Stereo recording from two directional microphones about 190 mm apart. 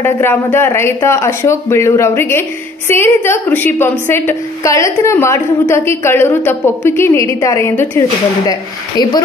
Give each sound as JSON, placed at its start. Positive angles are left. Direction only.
{"t": 0.0, "sound": "a woman's voice", "side_deg": 10}